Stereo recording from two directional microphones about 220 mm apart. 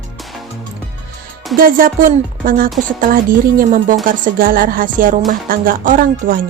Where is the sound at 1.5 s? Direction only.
40° right (ahead or behind).